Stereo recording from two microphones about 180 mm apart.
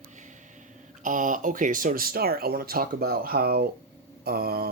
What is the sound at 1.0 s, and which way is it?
Speech, 45° right (ahead or behind).